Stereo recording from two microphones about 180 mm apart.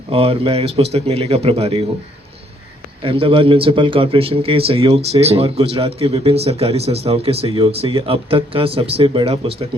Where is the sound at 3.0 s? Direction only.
30° right (ahead or behind).